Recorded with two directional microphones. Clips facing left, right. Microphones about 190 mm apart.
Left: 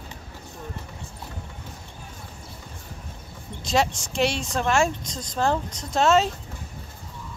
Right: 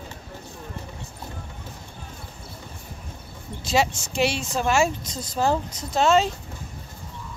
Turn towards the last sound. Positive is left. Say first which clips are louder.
# even
turn(degrees=0)  # may be behind; listen again after turning